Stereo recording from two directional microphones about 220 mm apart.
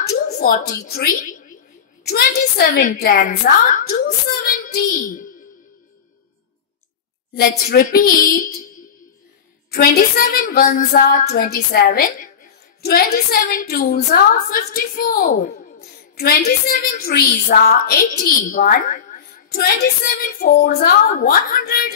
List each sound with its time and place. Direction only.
0.0 s a woman's voice: 45° left (ahead or behind)
7.3 s a woman's voice: 45° left (ahead or behind)
9.7 s a woman's voice: 45° left (ahead or behind)